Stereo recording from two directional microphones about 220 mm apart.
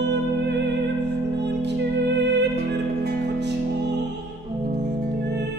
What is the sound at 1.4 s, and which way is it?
Music, 50° right (ahead or behind).